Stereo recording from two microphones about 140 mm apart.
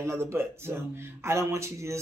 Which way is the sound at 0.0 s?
20° right (ahead or behind).